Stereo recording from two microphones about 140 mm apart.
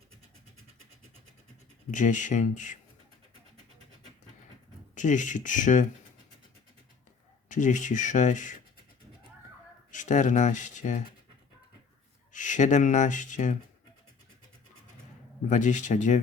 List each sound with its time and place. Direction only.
1.9 s speech: 65° left (ahead or behind)
4.9 s speech: 65° left (ahead or behind)
7.4 s speech: 65° left (ahead or behind)
9.9 s speech: 60° left (ahead or behind)
12.3 s speech: 65° left (ahead or behind)
15.4 s speech: 60° left (ahead or behind)